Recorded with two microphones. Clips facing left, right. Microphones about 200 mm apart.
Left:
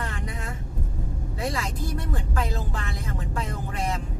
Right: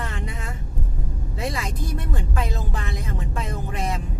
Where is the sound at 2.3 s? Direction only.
20° right (ahead or behind).